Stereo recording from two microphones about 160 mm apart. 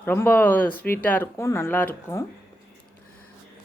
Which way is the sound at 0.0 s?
10° left (ahead or behind).